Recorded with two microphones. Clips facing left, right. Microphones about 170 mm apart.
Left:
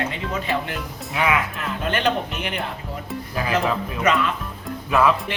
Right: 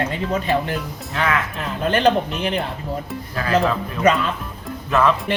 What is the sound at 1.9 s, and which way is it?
Speech, 35° right (ahead or behind).